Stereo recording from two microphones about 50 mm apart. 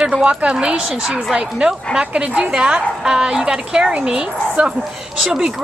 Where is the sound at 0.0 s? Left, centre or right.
Centre.